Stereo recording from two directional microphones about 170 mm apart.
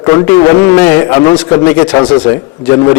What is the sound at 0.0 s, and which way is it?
A man's voice, 20° left (ahead or behind).